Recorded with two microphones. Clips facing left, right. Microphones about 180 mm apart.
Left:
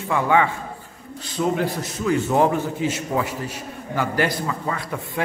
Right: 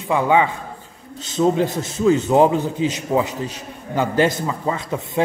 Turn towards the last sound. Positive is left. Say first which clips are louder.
# right 5 dB
turn(degrees=-20)  # may be behind; listen again after turning